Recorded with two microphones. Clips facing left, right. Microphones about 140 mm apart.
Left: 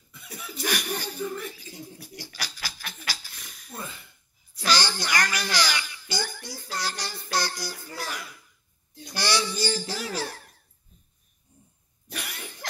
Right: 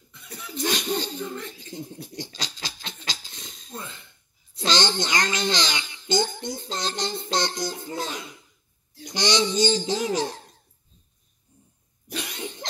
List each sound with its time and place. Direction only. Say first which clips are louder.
0.1 s chuckle: even; 10° left (ahead or behind)
0.7 s laughter: right 4 dB; 20° right (ahead or behind)
1.3 s speech: left 1 dB; 10° left (ahead or behind)
1.7 s a sound: right 5 dB; 20° right (ahead or behind)
4.6 s babbling: right 2 dB; 20° right (ahead or behind)
12.1 s cough: right 6 dB; 20° right (ahead or behind)